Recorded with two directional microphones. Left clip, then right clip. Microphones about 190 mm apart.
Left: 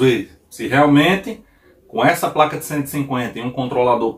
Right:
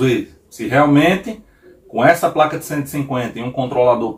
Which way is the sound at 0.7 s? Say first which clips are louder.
Right 1 dB; 10° left (ahead or behind).